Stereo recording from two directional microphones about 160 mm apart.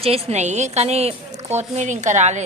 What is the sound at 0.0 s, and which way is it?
A woman's voice, 40° right (ahead or behind).